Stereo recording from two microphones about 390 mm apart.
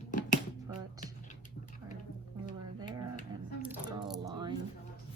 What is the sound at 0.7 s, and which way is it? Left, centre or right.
Music, centre.